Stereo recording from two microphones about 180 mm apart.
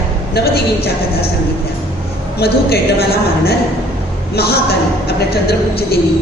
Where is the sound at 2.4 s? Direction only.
60° left (ahead or behind).